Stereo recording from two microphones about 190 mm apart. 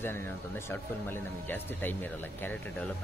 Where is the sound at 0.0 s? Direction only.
10° left (ahead or behind).